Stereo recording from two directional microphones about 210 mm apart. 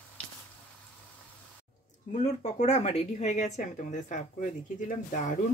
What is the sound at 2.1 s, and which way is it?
Speech, 35° left (ahead or behind).